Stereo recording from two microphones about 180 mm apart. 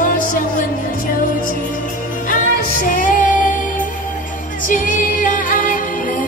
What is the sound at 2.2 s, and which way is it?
Music, 50° left (ahead or behind).